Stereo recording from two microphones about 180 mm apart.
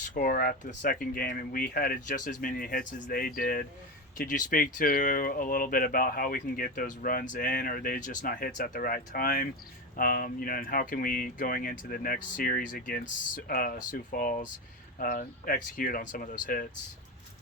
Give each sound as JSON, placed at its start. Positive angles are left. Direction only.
{"t": 0.1, "sound": "speech", "side_deg": 55}